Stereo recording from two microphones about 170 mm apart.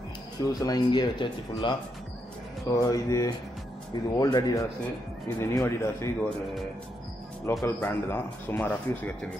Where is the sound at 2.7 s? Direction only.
20° left (ahead or behind).